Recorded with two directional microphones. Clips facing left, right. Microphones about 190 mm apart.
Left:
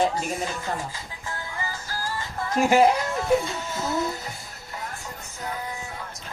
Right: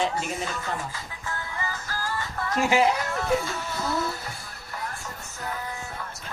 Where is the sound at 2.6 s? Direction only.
45° left (ahead or behind).